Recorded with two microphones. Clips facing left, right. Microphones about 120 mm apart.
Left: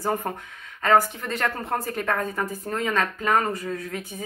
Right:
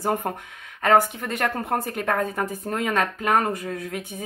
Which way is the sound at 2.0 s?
30° right (ahead or behind).